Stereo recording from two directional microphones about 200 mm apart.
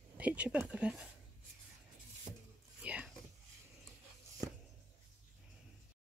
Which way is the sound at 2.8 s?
5° right (ahead or behind).